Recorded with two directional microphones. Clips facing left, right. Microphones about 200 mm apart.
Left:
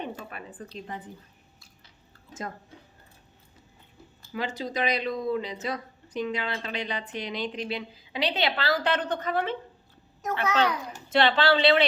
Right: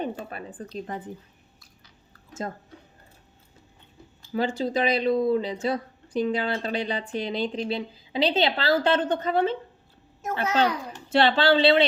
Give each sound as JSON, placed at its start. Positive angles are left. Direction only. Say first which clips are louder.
{"t": 0.0, "sound": "speech", "louder": "right 5 dB", "side_deg": -35}
{"t": 2.4, "sound": "speech", "louder": "right 4 dB", "side_deg": -30}
{"t": 4.4, "sound": "a woman's voice", "louder": "right 5 dB", "side_deg": -30}